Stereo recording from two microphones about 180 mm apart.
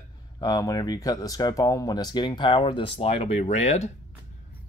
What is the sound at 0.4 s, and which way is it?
Speech, 20° left (ahead or behind).